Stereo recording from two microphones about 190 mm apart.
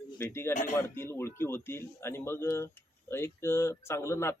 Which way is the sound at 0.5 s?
40° left (ahead or behind).